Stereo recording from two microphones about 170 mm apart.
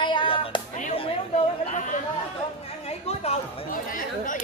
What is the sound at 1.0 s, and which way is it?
Chatter, 40° left (ahead or behind).